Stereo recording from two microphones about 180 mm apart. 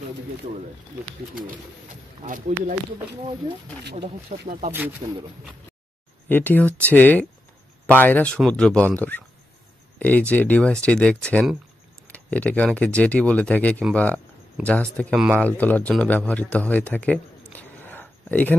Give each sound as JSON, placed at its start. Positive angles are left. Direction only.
{"t": 2.2, "sound": "speech", "side_deg": -45}
{"t": 3.9, "sound": "speech", "side_deg": -40}
{"t": 5.0, "sound": "speech", "side_deg": -30}
{"t": 6.2, "sound": "speech", "side_deg": 10}
{"t": 15.1, "sound": "speech", "side_deg": -5}
{"t": 15.4, "sound": "a man's voice", "side_deg": 10}